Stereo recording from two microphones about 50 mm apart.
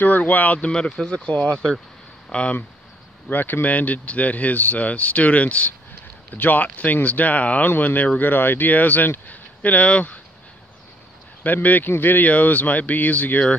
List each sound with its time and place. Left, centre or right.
0.0 s speech: left
0.7 s speech: centre
3.3 s speech: left
11.4 s speech: left